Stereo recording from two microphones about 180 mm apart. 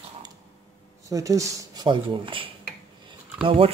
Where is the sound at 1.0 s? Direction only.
20° right (ahead or behind).